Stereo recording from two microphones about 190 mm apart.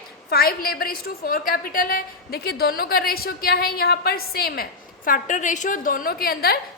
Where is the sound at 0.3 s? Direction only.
50° left (ahead or behind).